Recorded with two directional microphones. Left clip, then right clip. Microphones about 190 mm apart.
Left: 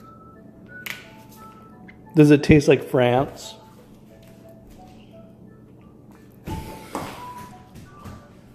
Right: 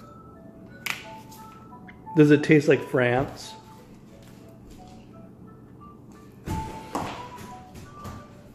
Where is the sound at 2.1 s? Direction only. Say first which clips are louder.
Left 3 dB; 30° left (ahead or behind).